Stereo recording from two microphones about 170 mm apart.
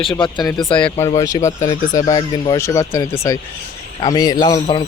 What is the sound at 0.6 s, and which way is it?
Speech, 5° left (ahead or behind).